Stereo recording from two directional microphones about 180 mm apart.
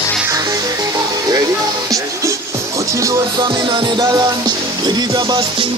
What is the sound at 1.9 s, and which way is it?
Music, 15° right (ahead or behind).